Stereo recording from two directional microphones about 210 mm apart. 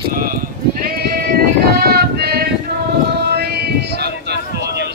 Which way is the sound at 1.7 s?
50° right (ahead or behind).